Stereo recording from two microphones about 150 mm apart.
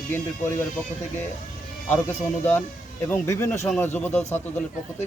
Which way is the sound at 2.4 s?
15° left (ahead or behind).